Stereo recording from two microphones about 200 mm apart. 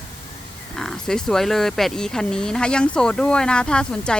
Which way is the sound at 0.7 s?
5° left (ahead or behind).